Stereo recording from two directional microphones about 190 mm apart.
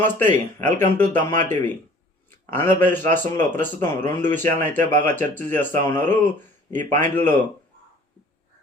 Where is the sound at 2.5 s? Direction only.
10° left (ahead or behind).